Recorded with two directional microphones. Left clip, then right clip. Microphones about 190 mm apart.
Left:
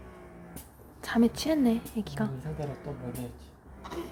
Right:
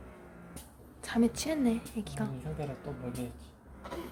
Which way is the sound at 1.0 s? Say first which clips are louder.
Left 4 dB; 25° left (ahead or behind).